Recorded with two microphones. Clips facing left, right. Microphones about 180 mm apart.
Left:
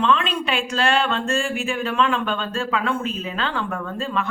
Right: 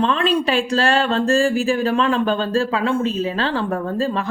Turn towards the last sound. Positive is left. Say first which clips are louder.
# right 5 dB
turn(degrees=-35)  # may be behind; listen again after turning